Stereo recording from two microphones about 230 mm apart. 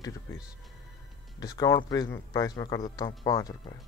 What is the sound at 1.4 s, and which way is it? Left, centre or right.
Speech, centre.